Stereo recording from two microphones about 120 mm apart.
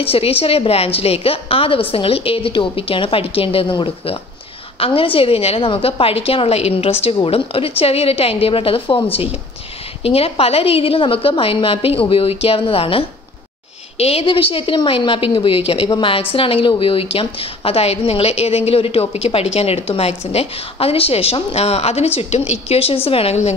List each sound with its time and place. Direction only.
0.0 s a woman's voice: 50° left (ahead or behind)